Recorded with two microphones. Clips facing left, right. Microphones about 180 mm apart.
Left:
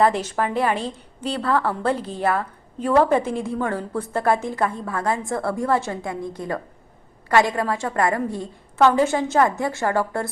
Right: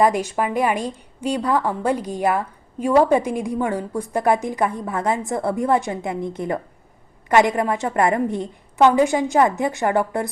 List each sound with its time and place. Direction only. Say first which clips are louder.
0.0 s a woman's voice: right 1 dB; 10° right (ahead or behind)